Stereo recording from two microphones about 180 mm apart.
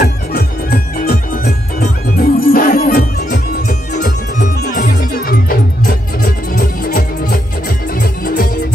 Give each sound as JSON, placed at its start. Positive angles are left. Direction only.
{"t": 0.0, "sound": "music", "side_deg": 60}
{"t": 6.5, "sound": "music", "side_deg": 50}